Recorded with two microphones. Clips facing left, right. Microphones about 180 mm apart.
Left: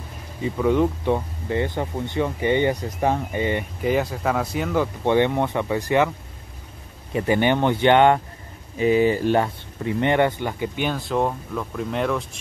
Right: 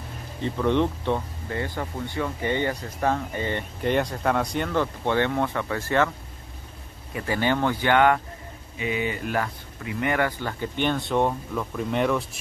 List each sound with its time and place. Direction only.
0.4 s speech: 5° left (ahead or behind)
3.8 s speech: 5° left (ahead or behind)
5.0 s speech: 15° left (ahead or behind)
7.1 s speech: 20° left (ahead or behind)
8.7 s speech: 35° left (ahead or behind)
10.6 s speech: 5° left (ahead or behind)